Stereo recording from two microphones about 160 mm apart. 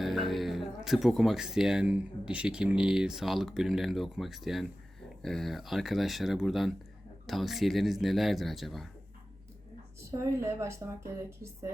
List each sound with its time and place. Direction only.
0.0 s speech: centre (ahead or behind)
10.1 s a woman's voice: 20° right (ahead or behind)